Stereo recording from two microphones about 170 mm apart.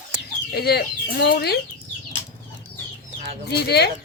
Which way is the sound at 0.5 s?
75° left (ahead or behind).